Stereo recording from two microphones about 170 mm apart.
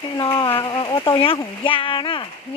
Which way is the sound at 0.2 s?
30° left (ahead or behind).